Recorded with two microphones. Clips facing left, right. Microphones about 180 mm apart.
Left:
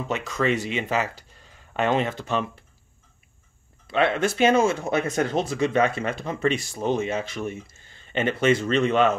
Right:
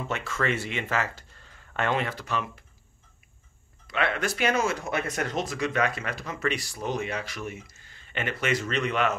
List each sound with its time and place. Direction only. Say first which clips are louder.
0.1 s speech: left 5 dB; 20° left (ahead or behind)
3.8 s speech: left 6 dB; 25° left (ahead or behind)